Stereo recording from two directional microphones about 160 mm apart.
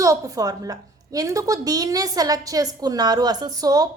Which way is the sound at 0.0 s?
20° right (ahead or behind).